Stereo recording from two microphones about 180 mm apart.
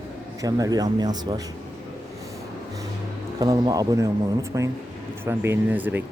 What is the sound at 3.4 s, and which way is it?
Speech, 20° right (ahead or behind).